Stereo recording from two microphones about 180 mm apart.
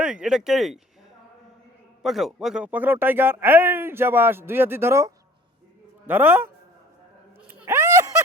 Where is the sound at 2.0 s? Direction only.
Centre (ahead or behind).